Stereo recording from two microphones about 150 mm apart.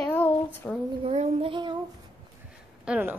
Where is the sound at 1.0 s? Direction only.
45° right (ahead or behind).